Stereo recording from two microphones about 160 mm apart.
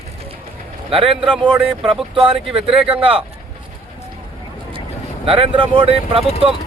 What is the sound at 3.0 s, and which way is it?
Speech, 35° right (ahead or behind).